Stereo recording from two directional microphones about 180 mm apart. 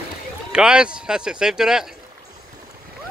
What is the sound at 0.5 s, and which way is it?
Speech, 5° right (ahead or behind).